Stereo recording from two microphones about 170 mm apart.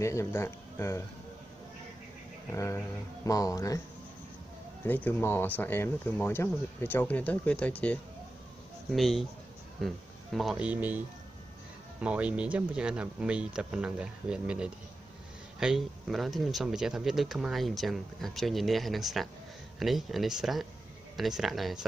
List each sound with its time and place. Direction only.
0.0 s speech: 15° left (ahead or behind)
2.5 s speech: 20° left (ahead or behind)
4.8 s speech: 10° left (ahead or behind); by 11.0 s 10° right (ahead or behind)
12.0 s speech: 10° right (ahead or behind)